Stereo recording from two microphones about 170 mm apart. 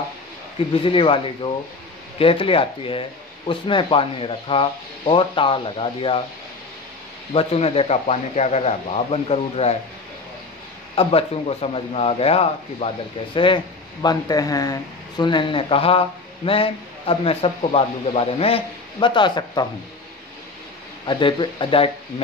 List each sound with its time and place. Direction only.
0.8 s speech: 30° left (ahead or behind)
7.3 s speech: 35° left (ahead or behind)
11.0 s speech: 35° left (ahead or behind)
21.1 s speech: 30° left (ahead or behind)